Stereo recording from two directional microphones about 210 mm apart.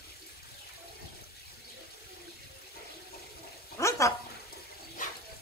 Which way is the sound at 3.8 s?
15° left (ahead or behind).